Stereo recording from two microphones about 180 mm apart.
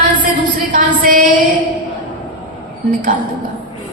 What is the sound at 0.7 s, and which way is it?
Music, 50° right (ahead or behind).